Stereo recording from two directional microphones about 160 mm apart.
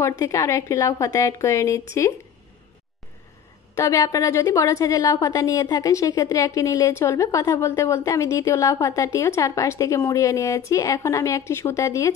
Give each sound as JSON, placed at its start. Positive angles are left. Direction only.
{"t": 0.2, "sound": "a woman's voice", "side_deg": 20}
{"t": 3.7, "sound": "a woman's voice", "side_deg": 20}